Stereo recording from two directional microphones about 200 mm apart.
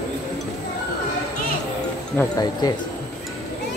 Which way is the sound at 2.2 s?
20° left (ahead or behind).